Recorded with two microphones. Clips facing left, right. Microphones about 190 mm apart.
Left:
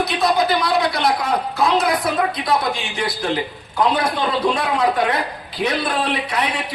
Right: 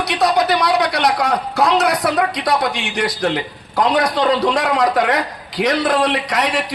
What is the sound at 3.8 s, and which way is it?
A man's voice, 90° right.